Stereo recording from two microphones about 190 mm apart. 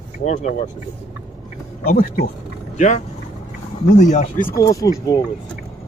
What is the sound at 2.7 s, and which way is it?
Speech, 40° left (ahead or behind).